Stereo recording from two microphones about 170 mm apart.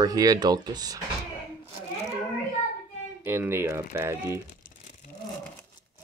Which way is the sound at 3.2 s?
15° right (ahead or behind).